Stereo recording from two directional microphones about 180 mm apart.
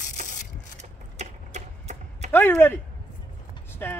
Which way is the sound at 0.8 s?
40° right (ahead or behind).